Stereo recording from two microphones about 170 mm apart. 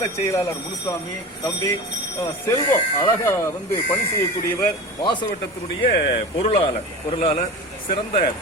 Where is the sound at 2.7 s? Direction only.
15° left (ahead or behind).